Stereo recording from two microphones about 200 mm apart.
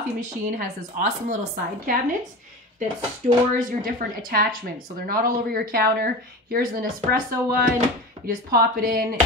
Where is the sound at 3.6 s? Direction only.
45° right (ahead or behind).